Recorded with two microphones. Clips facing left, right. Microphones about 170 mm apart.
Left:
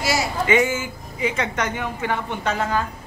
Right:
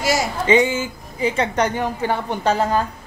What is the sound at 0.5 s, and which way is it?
Speech, 30° right (ahead or behind).